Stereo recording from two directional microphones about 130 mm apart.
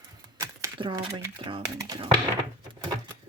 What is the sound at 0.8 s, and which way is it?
Speech, 40° right (ahead or behind).